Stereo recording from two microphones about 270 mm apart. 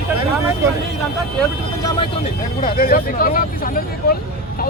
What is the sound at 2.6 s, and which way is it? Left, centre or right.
Speech, left.